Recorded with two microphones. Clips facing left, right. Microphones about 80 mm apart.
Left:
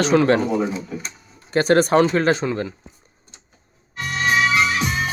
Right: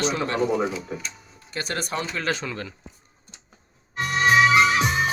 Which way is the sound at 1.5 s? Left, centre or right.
Left.